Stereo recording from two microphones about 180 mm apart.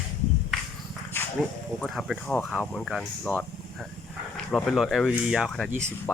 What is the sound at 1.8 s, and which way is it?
Speech, centre (ahead or behind).